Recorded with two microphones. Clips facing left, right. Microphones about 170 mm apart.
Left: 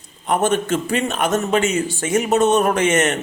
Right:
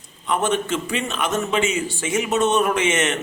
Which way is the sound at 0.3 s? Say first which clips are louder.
Left 3 dB; 45° left (ahead or behind).